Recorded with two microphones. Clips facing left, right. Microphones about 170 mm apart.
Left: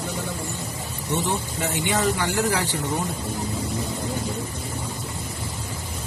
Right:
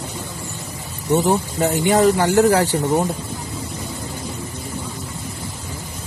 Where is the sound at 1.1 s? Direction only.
45° right (ahead or behind).